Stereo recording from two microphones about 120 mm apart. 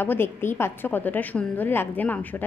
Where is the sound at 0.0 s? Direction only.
20° left (ahead or behind).